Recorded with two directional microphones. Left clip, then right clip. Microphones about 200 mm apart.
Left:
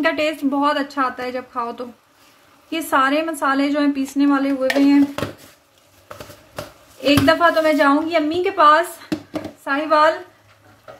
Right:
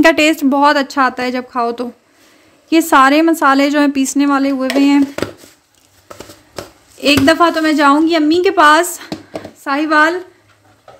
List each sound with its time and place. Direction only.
0.0 s a woman's voice: 60° right (ahead or behind)
7.0 s a woman's voice: 60° right (ahead or behind)